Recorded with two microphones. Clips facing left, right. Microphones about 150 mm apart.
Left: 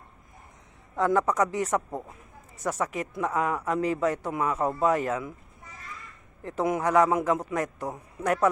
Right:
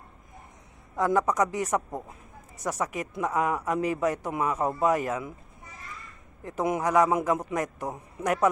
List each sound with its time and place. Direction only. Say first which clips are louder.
0.9 s speech: even; 15° right (ahead or behind)
6.4 s speech: left 1 dB; 15° right (ahead or behind)